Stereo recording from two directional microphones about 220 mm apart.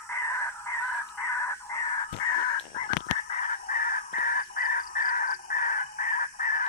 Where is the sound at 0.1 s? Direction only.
10° left (ahead or behind).